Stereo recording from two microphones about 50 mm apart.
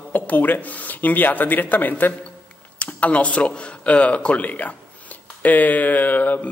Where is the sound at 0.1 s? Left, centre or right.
Left.